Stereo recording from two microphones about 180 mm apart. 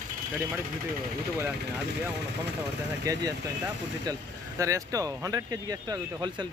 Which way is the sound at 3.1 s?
20° right (ahead or behind).